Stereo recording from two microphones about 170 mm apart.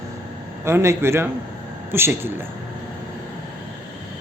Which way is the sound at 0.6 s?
15° right (ahead or behind).